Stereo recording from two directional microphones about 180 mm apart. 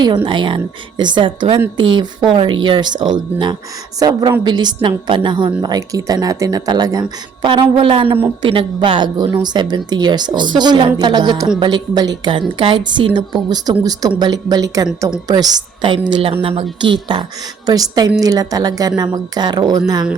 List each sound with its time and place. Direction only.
0.3 s speech: 25° right (ahead or behind)